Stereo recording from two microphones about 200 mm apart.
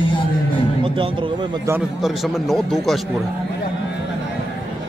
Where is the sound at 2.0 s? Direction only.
Centre (ahead or behind).